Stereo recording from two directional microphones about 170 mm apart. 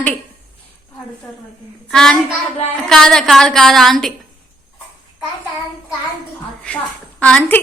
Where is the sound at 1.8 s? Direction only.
5° left (ahead or behind).